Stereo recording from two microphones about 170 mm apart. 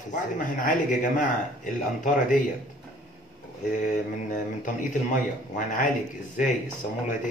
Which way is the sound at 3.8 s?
50° left (ahead or behind).